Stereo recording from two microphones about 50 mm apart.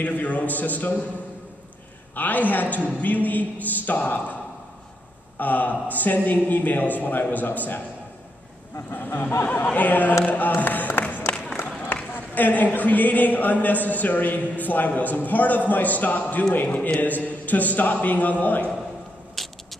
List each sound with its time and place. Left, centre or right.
0.0 s a woman's voice: left
2.1 s a woman's voice: left
5.4 s a woman's voice: left
9.4 s a woman's voice: left
11.0 s crowd: left
11.3 s music: left
11.9 s a woman's voice: left
19.4 s a sound: centre